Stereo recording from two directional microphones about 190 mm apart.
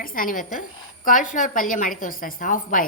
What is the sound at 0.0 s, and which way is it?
A woman's voice, 45° left (ahead or behind).